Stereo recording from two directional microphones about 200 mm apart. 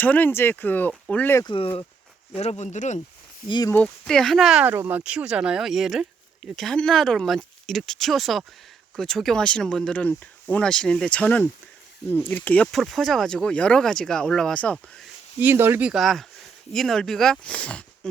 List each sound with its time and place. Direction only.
0.0 s speech: 10° left (ahead or behind)
1.5 s speech: 25° left (ahead or behind)
3.4 s speech: 20° left (ahead or behind)
3.8 s speech: 5° left (ahead or behind)
15.4 s speech: 10° right (ahead or behind); by 18.1 s 5° left (ahead or behind)